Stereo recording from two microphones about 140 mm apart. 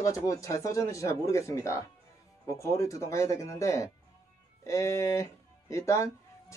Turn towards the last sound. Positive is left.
turn(degrees=20)  # may be behind; listen again after turning